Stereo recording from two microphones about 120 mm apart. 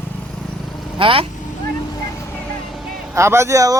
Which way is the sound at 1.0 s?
45° right (ahead or behind).